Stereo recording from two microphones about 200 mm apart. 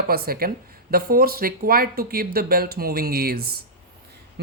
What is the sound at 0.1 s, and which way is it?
Speech, 50° right (ahead or behind).